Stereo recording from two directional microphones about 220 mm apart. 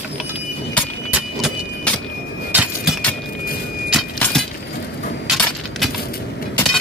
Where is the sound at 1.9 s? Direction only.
5° left (ahead or behind).